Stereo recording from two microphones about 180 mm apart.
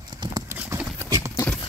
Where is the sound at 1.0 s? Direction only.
20° right (ahead or behind).